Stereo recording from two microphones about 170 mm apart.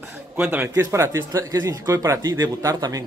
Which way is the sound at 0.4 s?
10° right (ahead or behind).